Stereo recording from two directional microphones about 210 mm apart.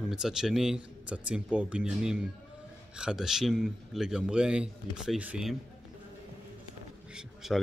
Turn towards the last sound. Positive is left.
turn(degrees=0)  # may be behind; listen again after turning